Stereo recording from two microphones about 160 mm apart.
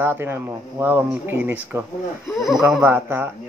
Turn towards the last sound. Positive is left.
turn(degrees=-10)  # may be behind; listen again after turning